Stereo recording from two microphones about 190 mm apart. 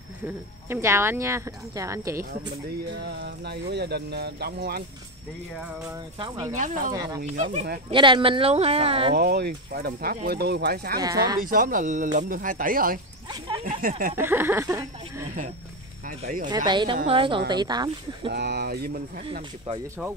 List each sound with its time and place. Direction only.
0.2 s speech: 15° right (ahead or behind)
3.0 s speech: 60° right (ahead or behind)
6.1 s speech: 25° right (ahead or behind)
6.5 s speech: 40° right (ahead or behind)
7.9 s speech: 25° right (ahead or behind)
9.1 s speech: 55° right (ahead or behind)
11.0 s speech: 20° right (ahead or behind)
11.4 s speech: 45° right (ahead or behind)
14.1 s speech: 10° right (ahead or behind)
16.1 s speech: 45° right (ahead or behind)
16.4 s speech: 20° right (ahead or behind)
18.3 s speech: 60° right (ahead or behind)